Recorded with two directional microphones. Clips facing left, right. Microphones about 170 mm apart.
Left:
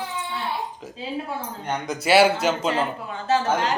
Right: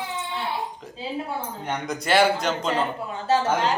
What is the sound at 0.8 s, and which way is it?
A man's voice, 5° left (ahead or behind).